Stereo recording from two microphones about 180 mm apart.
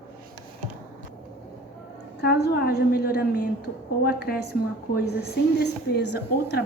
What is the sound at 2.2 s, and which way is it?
A woman's voice, 60° left (ahead or behind).